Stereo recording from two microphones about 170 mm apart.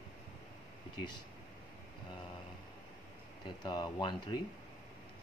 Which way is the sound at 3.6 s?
25° left (ahead or behind).